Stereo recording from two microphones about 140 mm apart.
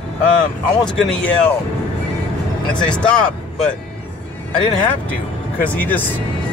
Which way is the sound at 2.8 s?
5° left (ahead or behind).